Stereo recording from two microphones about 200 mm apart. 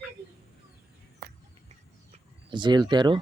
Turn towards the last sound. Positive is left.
turn(degrees=-20)  # may be behind; listen again after turning